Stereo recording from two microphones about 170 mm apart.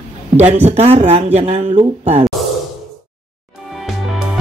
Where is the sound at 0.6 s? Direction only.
40° right (ahead or behind).